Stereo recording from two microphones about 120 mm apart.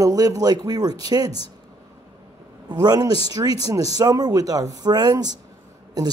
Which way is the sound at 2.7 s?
35° right (ahead or behind).